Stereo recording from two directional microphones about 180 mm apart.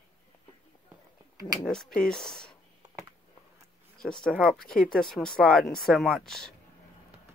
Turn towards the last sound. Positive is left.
turn(degrees=5)  # may be behind; listen again after turning